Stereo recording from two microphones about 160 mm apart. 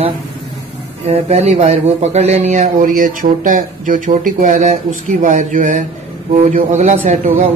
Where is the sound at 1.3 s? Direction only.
45° right (ahead or behind).